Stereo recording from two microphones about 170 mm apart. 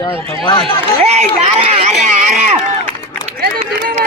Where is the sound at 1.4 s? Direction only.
35° right (ahead or behind).